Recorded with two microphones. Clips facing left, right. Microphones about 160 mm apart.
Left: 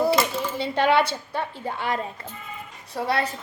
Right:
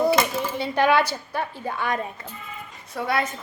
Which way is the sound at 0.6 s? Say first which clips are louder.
Even; 25° left (ahead or behind).